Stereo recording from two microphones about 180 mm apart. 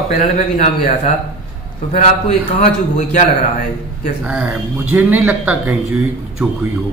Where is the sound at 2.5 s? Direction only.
40° left (ahead or behind).